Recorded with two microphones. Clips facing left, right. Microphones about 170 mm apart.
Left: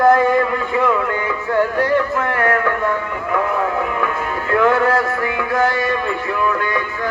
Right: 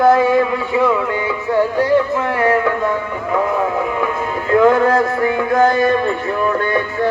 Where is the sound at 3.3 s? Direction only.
20° right (ahead or behind).